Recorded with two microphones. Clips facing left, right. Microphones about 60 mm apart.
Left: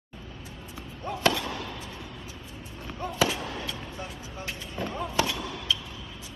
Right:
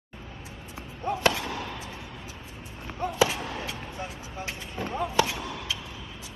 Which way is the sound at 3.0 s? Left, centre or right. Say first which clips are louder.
Right 2 dB; right.